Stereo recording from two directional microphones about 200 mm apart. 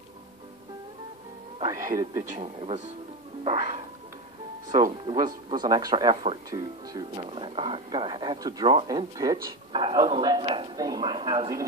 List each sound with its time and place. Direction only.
1.7 s speech: 15° right (ahead or behind)
2.4 s speech: 30° right (ahead or behind)
5.0 s speech: 20° right (ahead or behind)